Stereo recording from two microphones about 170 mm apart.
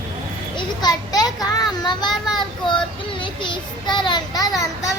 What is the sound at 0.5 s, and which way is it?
A child's voice, 25° left (ahead or behind).